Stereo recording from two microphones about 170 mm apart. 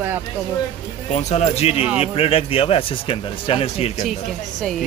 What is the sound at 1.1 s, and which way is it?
Speech, 40° left (ahead or behind).